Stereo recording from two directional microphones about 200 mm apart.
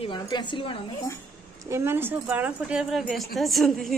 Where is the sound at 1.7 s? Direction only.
15° right (ahead or behind).